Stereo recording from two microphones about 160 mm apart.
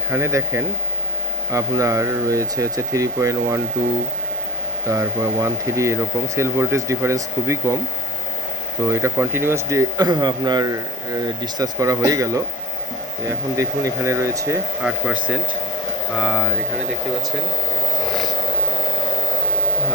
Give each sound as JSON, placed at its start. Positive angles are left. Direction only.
{"t": 0.1, "sound": "speech", "side_deg": -15}
{"t": 4.9, "sound": "speech", "side_deg": -20}
{"t": 8.9, "sound": "speech", "side_deg": -15}
{"t": 13.6, "sound": "speech", "side_deg": -20}
{"t": 14.8, "sound": "speech", "side_deg": -5}